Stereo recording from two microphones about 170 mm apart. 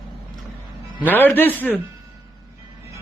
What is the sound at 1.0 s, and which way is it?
Speech, 10° left (ahead or behind).